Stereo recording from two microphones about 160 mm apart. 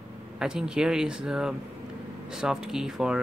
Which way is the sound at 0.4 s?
5° right (ahead or behind).